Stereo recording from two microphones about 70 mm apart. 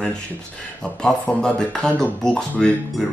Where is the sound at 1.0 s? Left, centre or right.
Centre.